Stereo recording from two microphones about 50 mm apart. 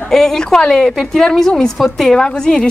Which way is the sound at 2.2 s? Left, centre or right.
Centre.